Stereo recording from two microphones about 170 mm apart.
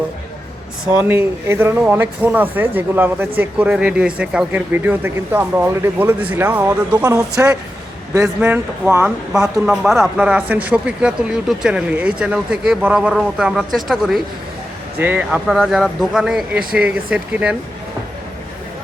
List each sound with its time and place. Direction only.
1.0 s a man's voice: 15° right (ahead or behind)